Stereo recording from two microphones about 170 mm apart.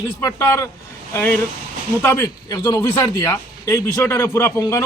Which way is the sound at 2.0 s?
15° left (ahead or behind).